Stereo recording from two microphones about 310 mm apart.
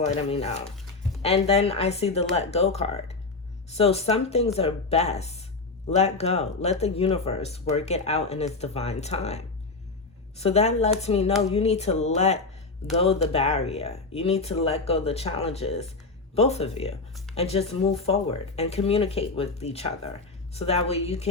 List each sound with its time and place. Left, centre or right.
0.1 s speech: centre